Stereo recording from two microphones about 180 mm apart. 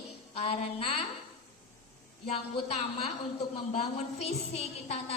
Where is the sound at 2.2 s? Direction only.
35° left (ahead or behind).